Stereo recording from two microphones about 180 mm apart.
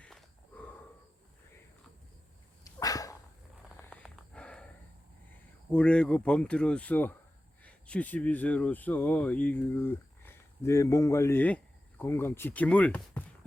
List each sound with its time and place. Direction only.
0.0 s a sound: 10° left (ahead or behind)
2.6 s dog: 20° left (ahead or behind)
3.8 s snort: 5° left (ahead or behind)
5.7 s speech: 5° left (ahead or behind)